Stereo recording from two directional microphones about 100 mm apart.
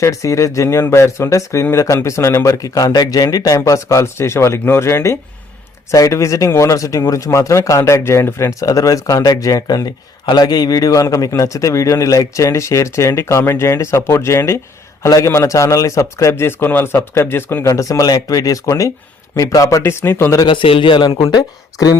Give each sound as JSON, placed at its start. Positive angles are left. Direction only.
{"t": 0.0, "sound": "a man's voice", "side_deg": 30}
{"t": 20.4, "sound": "speech", "side_deg": 55}